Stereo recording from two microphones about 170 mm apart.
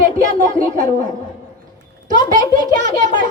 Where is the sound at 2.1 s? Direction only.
50° right (ahead or behind).